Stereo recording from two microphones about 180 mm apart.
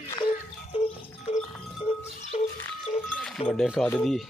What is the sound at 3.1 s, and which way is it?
Cowbell, 5° left (ahead or behind).